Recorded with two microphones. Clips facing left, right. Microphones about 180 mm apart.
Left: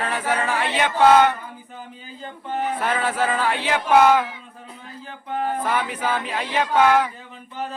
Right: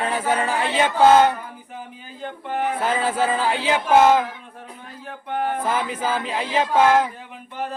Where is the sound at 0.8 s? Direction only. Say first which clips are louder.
Right 1 dB; 30° right (ahead or behind).